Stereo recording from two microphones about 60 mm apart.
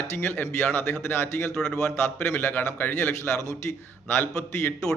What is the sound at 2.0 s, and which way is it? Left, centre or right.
A man's voice, left.